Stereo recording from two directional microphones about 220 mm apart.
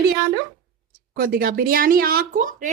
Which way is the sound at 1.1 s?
45° right (ahead or behind).